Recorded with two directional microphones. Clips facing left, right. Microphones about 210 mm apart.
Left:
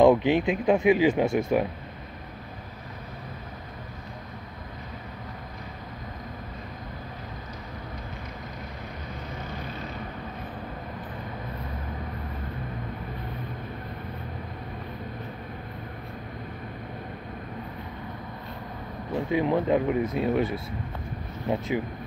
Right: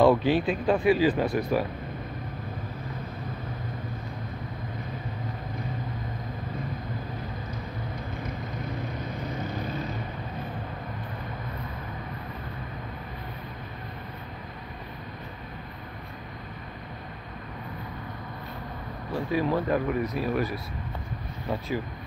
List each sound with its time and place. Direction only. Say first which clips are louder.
0.0 s speech: left 2 dB; 20° left (ahead or behind)
19.1 s speech: left 2 dB; 20° left (ahead or behind)